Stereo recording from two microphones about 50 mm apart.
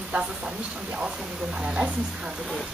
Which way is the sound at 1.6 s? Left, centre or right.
Right.